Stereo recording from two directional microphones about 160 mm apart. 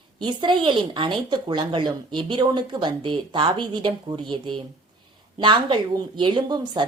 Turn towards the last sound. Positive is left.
turn(degrees=-30)  # may be behind; listen again after turning